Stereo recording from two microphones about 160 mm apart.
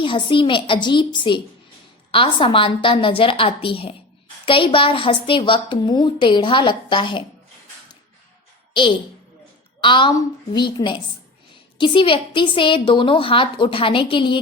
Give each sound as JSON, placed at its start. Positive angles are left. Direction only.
{"t": 0.0, "sound": "a woman's voice", "side_deg": 30}
{"t": 8.7, "sound": "a woman's voice", "side_deg": 30}